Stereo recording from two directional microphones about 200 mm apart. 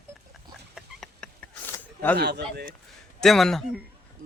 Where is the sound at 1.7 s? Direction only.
10° left (ahead or behind).